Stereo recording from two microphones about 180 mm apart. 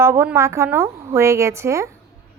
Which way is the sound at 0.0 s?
15° right (ahead or behind).